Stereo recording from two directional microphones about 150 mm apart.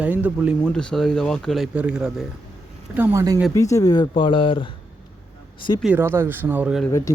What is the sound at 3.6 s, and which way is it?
Speech, 20° left (ahead or behind).